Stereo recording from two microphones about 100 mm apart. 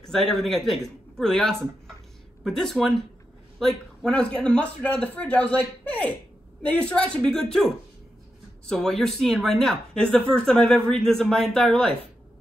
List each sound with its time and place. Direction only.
0.0 s a man's voice: 5° left (ahead or behind)